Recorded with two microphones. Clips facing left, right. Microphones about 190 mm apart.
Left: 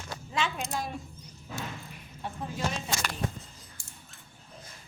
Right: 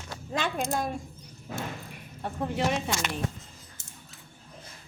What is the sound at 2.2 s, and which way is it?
Speech, 60° right (ahead or behind).